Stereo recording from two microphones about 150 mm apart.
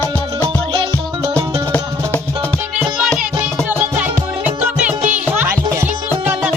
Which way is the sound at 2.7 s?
5° right (ahead or behind).